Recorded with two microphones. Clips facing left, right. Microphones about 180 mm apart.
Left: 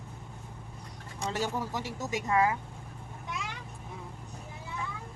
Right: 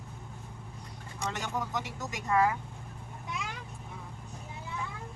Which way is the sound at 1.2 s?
30° left (ahead or behind).